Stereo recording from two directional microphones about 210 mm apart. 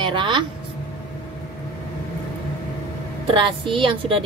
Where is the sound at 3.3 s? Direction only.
25° right (ahead or behind).